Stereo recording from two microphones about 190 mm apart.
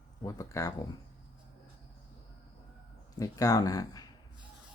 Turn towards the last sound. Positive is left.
turn(degrees=20)  # may be behind; listen again after turning